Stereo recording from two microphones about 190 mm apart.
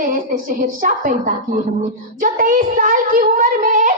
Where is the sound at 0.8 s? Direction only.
45° right (ahead or behind).